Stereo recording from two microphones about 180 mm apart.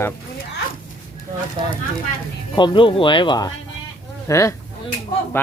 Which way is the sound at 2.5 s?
25° left (ahead or behind).